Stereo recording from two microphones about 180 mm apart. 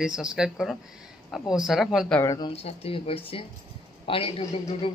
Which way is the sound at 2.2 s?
20° left (ahead or behind).